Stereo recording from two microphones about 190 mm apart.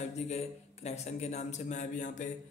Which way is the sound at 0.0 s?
35° left (ahead or behind).